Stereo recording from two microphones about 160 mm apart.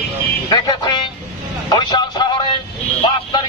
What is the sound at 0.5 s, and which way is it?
Music, 25° left (ahead or behind).